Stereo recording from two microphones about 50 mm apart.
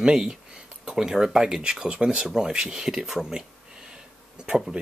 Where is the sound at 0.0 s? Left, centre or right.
Centre.